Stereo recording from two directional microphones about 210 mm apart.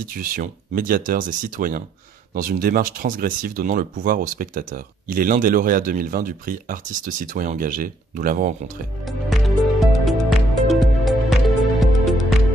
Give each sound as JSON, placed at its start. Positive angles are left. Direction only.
{"t": 0.1, "sound": "speech", "side_deg": -40}
{"t": 9.0, "sound": "music", "side_deg": 0}